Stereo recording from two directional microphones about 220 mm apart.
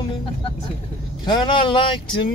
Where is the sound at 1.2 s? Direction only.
20° left (ahead or behind).